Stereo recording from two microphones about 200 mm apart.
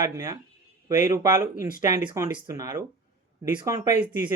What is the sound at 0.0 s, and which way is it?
Speech, 15° right (ahead or behind).